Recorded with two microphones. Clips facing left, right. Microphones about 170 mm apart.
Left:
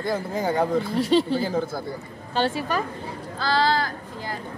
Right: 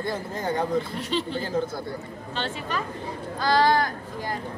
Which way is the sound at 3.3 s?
15° right (ahead or behind).